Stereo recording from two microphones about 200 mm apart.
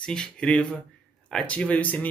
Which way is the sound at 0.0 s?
5° left (ahead or behind).